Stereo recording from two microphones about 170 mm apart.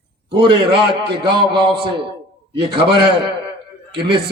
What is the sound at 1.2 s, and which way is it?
A man's voice, 30° right (ahead or behind).